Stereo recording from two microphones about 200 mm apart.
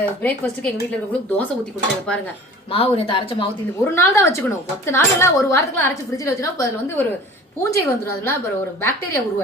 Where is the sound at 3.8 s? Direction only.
15° left (ahead or behind).